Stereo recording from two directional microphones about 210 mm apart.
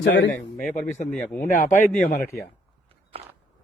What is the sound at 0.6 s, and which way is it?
Speech, 35° left (ahead or behind).